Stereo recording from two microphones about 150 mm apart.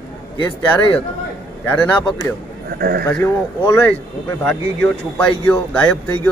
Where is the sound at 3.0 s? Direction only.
20° left (ahead or behind).